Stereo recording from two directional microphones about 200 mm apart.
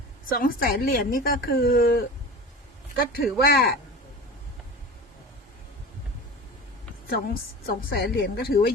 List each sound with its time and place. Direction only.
0.3 s a woman's voice: 45° left (ahead or behind)
7.1 s a woman's voice: 50° left (ahead or behind)